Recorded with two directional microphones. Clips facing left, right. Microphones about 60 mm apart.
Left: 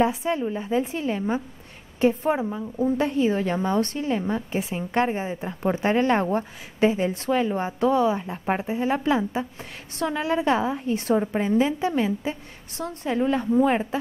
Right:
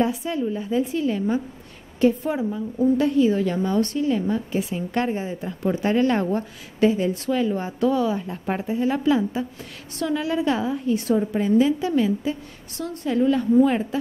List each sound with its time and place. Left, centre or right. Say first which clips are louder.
0.0 s a woman's voice: left 1 dB; left